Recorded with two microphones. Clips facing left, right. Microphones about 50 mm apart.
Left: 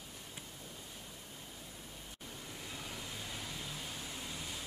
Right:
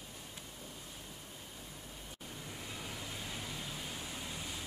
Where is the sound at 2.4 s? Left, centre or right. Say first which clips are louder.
Right 1 dB; centre.